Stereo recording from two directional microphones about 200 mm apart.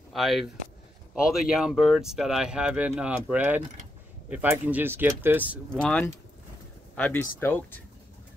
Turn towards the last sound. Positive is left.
turn(degrees=10)  # may be behind; listen again after turning